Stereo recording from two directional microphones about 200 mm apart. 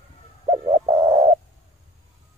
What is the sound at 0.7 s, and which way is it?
Bird, 15° right (ahead or behind).